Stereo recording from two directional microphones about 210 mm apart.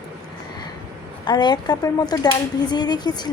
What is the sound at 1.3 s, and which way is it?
Speech, 20° left (ahead or behind).